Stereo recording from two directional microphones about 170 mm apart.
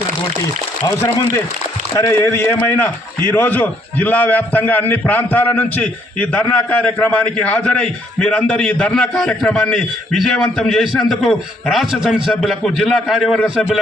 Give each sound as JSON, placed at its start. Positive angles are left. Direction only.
{"t": 0.9, "sound": "a man's voice", "side_deg": 15}